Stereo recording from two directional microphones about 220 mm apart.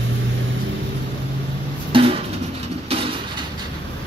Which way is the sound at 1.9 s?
25° right (ahead or behind).